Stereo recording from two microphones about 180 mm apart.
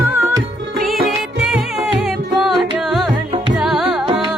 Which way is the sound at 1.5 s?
5° right (ahead or behind).